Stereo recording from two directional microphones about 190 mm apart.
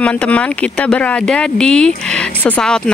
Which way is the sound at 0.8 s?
5° left (ahead or behind).